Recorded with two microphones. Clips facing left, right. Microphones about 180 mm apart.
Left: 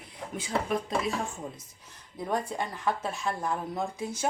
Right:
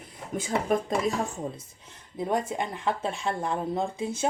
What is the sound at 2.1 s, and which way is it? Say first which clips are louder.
Speech: right 3 dB; 20° right (ahead or behind).